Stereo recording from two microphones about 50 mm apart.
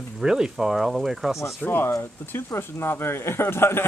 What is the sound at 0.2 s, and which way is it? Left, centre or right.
Speech, centre.